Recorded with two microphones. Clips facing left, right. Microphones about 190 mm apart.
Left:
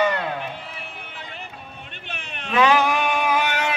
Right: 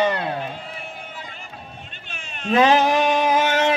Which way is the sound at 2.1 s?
60° left (ahead or behind).